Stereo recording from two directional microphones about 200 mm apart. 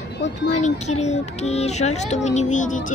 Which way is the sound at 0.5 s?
35° left (ahead or behind).